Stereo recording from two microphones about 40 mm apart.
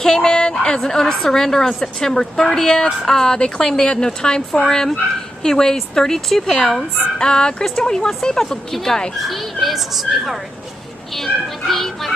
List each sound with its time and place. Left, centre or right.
0.0 s a woman's voice: centre
9.3 s speech: centre
11.1 s a woman's voice: centre